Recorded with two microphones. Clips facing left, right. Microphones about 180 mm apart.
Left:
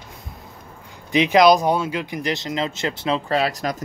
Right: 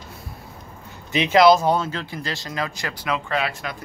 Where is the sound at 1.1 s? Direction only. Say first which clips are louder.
Left 1 dB; 15° left (ahead or behind); by 3.8 s 40° left (ahead or behind).